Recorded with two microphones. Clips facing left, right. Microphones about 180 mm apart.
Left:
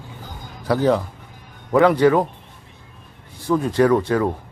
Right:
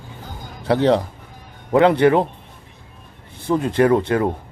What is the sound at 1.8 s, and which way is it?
Speech, 20° right (ahead or behind).